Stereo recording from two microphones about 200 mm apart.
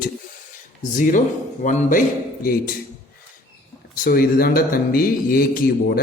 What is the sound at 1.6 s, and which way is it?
Speech, 40° left (ahead or behind).